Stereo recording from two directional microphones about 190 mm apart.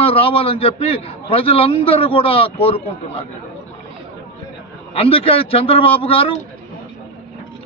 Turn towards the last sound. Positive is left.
turn(degrees=30)  # may be behind; listen again after turning